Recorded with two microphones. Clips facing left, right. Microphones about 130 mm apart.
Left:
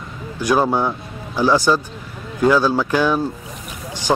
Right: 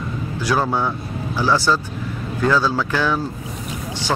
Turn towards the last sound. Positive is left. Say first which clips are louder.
# left 3 dB
turn(degrees=15)  # may be behind; listen again after turning